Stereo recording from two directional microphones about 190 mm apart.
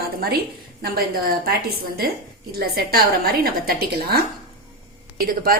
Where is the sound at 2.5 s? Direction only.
55° right (ahead or behind).